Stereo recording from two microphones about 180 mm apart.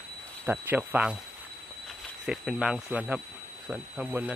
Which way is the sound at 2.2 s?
5° right (ahead or behind).